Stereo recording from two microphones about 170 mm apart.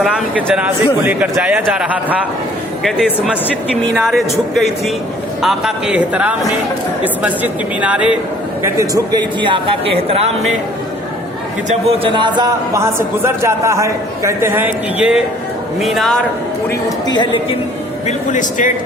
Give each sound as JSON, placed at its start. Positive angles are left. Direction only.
{"t": 0.5, "sound": "a man's voice", "side_deg": -10}
{"t": 3.9, "sound": "a man's voice", "side_deg": 0}
{"t": 9.4, "sound": "speech", "side_deg": -30}
{"t": 11.7, "sound": "a man's voice", "side_deg": -35}
{"t": 17.1, "sound": "a woman's voice", "side_deg": 25}
{"t": 18.3, "sound": "speech", "side_deg": 50}